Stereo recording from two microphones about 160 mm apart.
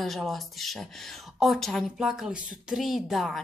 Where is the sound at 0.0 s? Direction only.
Centre (ahead or behind).